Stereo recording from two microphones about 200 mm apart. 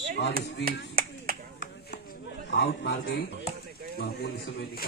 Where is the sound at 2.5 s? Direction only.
65° left (ahead or behind).